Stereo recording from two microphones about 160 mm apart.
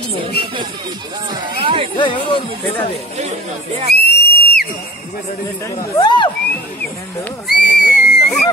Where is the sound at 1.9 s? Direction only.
30° left (ahead or behind).